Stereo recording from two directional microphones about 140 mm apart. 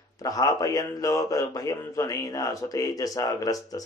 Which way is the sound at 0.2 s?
25° left (ahead or behind).